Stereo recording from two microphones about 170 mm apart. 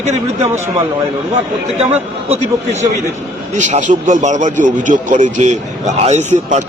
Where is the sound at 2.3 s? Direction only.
40° right (ahead or behind).